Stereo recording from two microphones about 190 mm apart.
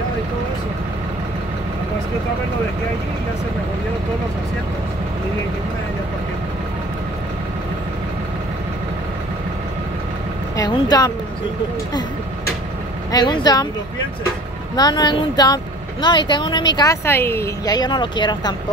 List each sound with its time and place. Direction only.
10.5 s speech: 20° left (ahead or behind)
13.1 s speech: 20° left (ahead or behind)
14.8 s speech: 20° left (ahead or behind)